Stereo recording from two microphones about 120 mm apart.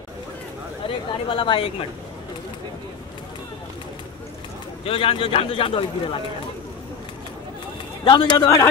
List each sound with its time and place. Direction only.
0.8 s speech: 45° left (ahead or behind)
4.8 s speech: 50° left (ahead or behind)
8.0 s speech: 40° left (ahead or behind)